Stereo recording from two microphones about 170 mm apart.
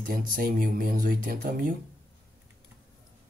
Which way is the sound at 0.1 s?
55° right (ahead or behind).